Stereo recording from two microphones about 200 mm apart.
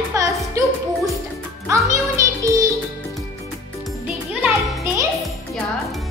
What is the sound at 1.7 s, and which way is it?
Music, 15° right (ahead or behind).